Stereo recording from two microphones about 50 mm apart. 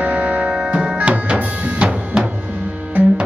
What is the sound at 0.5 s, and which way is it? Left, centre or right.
Music, centre.